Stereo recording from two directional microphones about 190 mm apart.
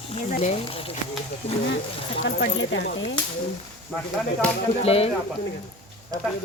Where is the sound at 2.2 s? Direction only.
65° left (ahead or behind).